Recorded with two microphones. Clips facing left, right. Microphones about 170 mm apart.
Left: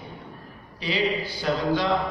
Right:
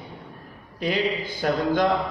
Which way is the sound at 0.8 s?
50° right (ahead or behind).